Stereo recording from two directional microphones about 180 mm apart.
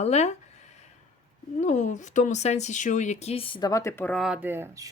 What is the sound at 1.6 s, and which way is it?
Speech, 40° left (ahead or behind).